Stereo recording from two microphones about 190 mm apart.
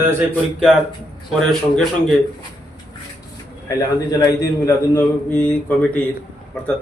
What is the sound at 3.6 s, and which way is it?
A man's voice, 20° left (ahead or behind).